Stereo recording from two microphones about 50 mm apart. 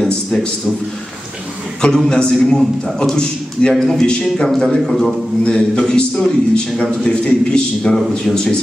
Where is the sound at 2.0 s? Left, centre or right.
Centre.